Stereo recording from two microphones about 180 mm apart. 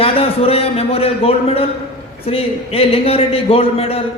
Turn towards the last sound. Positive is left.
turn(degrees=35)  # may be behind; listen again after turning